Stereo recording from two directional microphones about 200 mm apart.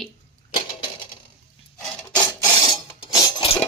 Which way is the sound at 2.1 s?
20° left (ahead or behind).